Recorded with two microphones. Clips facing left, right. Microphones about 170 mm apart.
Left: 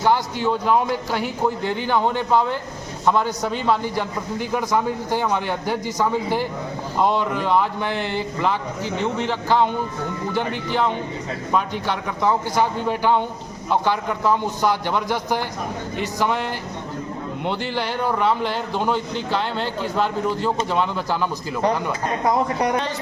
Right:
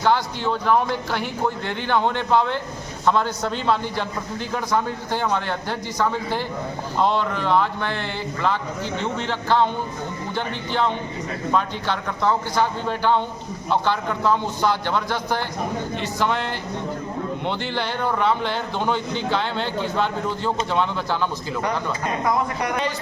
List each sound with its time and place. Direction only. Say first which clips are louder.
0.0 s a man's voice: left 1 dB; 10° left (ahead or behind)
22.2 s speech: left 4 dB; 35° left (ahead or behind)